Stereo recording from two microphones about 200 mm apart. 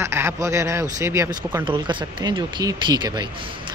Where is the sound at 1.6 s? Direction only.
25° right (ahead or behind).